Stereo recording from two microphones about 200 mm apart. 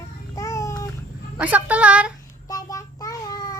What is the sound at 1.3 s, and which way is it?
Speech, 5° right (ahead or behind).